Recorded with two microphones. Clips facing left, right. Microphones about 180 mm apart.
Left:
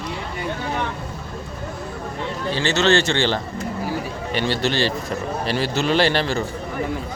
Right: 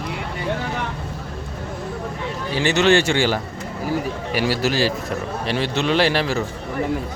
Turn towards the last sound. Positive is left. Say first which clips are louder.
# even
turn(degrees=-5)  # may be behind; listen again after turning